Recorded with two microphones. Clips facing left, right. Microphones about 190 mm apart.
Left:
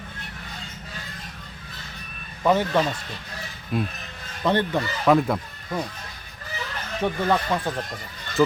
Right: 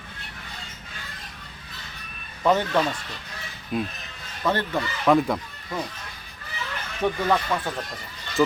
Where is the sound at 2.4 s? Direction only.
10° left (ahead or behind).